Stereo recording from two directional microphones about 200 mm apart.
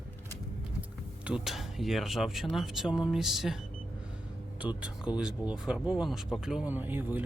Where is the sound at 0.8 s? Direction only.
5° right (ahead or behind).